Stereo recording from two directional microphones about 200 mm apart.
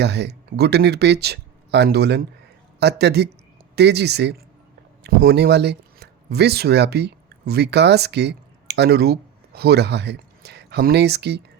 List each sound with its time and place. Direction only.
0.0 s speech: 55° right (ahead or behind)